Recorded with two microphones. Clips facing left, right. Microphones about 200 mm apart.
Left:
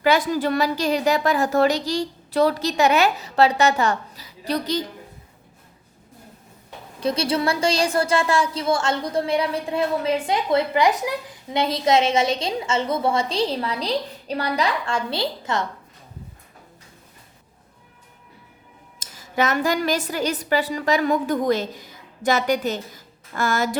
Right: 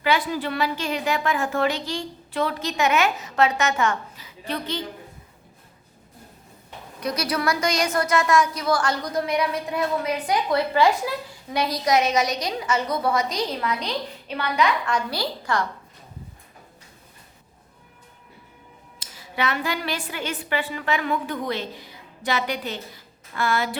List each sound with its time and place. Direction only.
0.0 s a woman's voice: 45° left (ahead or behind)
7.0 s a woman's voice: 30° left (ahead or behind)
18.9 s a woman's voice: 45° left (ahead or behind)